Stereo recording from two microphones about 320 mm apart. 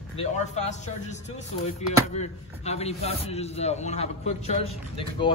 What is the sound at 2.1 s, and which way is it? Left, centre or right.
A man's voice, centre.